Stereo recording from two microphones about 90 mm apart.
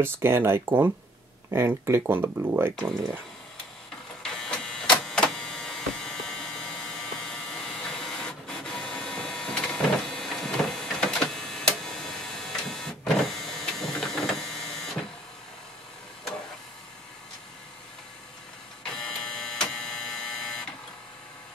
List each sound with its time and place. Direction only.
0.0 s speech: 25° right (ahead or behind)
4.2 s printer: 5° left (ahead or behind)
13.2 s power windows: 5° left (ahead or behind)
13.9 s printer: 5° left (ahead or behind)
18.9 s printer: 5° left (ahead or behind)